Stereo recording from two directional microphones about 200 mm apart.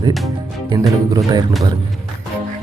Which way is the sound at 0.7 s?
20° right (ahead or behind).